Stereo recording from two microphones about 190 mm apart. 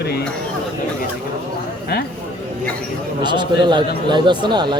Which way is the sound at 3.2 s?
25° right (ahead or behind).